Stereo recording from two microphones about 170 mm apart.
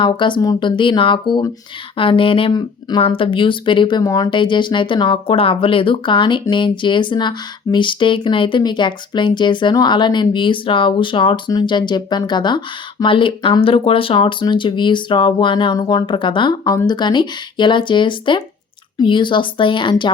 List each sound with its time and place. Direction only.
0.0 s speech: 30° left (ahead or behind)